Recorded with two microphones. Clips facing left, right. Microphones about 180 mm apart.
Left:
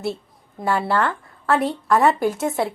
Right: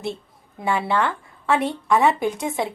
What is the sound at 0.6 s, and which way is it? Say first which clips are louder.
A woman's voice: left 1 dB; centre (ahead or behind).